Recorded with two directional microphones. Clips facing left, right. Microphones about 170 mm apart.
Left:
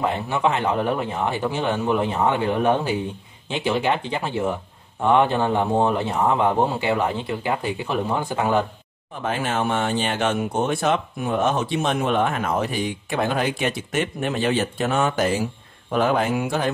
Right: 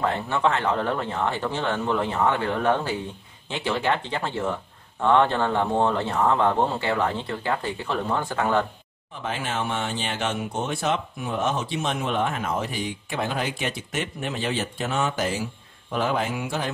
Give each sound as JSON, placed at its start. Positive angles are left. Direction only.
{"t": 0.0, "sound": "a man's voice", "side_deg": 15}
{"t": 9.1, "sound": "speech", "side_deg": 50}